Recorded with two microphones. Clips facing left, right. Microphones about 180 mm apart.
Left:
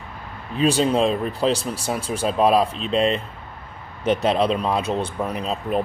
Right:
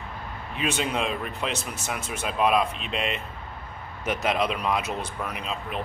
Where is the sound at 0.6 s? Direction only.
35° left (ahead or behind).